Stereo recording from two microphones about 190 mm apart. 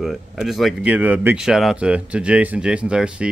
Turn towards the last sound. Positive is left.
turn(degrees=-5)  # may be behind; listen again after turning